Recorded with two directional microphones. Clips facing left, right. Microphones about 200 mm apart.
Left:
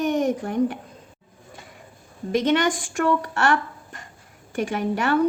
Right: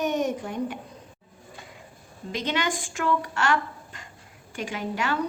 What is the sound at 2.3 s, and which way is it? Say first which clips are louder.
Speech: left 8 dB; 55° left (ahead or behind).